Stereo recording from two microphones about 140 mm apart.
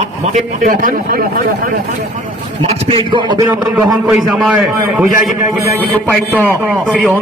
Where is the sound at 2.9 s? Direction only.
35° right (ahead or behind).